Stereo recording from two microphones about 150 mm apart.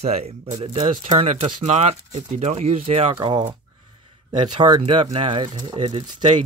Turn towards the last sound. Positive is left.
turn(degrees=-35)  # may be behind; listen again after turning